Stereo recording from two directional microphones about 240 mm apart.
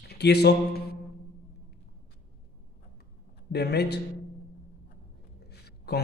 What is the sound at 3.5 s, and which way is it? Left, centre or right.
Speech, left.